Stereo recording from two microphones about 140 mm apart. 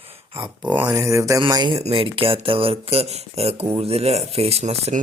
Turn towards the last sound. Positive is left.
turn(degrees=-55)  # may be behind; listen again after turning